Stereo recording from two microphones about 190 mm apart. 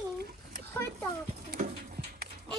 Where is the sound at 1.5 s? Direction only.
50° right (ahead or behind).